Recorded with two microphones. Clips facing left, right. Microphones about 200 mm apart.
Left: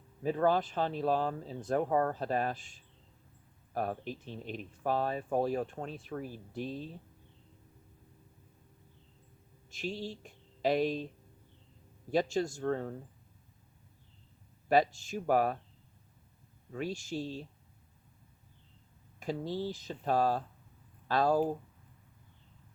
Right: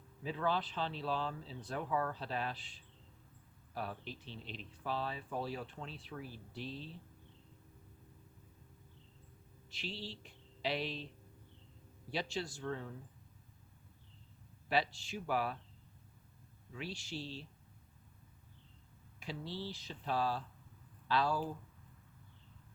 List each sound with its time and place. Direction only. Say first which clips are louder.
0.2 s speech: left 8 dB; 50° left (ahead or behind)
9.6 s speech: left 8 dB; 45° left (ahead or behind)
12.1 s speech: left 10 dB; 45° left (ahead or behind)
14.7 s speech: left 8 dB; 45° left (ahead or behind)
16.7 s speech: left 8 dB; 45° left (ahead or behind)
19.2 s speech: left 8 dB; 45° left (ahead or behind)